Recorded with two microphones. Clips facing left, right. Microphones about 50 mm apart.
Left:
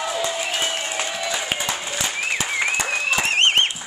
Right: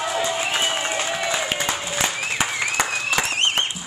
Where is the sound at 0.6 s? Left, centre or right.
Right.